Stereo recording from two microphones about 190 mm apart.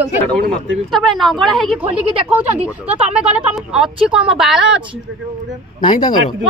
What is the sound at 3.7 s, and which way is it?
Speech, 5° right (ahead or behind).